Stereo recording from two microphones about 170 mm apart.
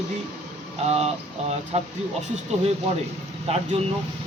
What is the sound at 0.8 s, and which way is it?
Speech, 40° right (ahead or behind).